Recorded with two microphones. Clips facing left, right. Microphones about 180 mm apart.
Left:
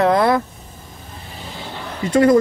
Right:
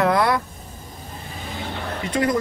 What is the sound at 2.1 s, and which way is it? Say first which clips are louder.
Speech: left 9 dB; 30° left (ahead or behind).